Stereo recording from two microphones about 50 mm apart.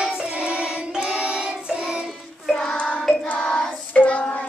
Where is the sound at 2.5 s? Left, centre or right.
Centre.